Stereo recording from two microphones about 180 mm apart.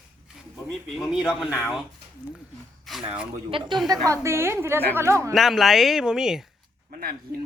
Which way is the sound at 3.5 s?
30° right (ahead or behind).